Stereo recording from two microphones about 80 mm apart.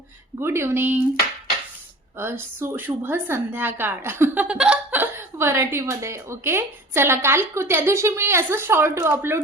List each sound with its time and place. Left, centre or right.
0.3 s a woman's voice: right
2.1 s a woman's voice: right
4.4 s a woman's voice: centre; by 9.4 s right